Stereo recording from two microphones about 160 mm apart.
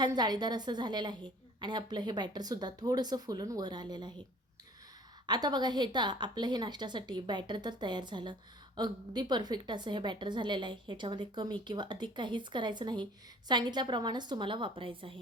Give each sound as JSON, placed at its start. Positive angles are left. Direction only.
{"t": 0.0, "sound": "a woman's voice", "side_deg": -25}
{"t": 5.2, "sound": "a woman's voice", "side_deg": -25}